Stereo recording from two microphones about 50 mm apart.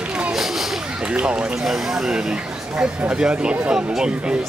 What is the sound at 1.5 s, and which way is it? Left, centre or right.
Speech, centre.